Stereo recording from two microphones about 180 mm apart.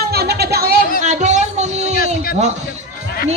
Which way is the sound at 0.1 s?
60° right (ahead or behind).